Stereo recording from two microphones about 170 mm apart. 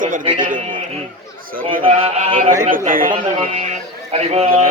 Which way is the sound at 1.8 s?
30° right (ahead or behind).